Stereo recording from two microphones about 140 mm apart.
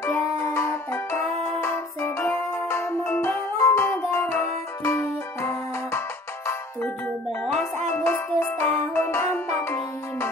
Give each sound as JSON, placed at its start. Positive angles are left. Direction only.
{"t": 0.0, "sound": "music", "side_deg": 20}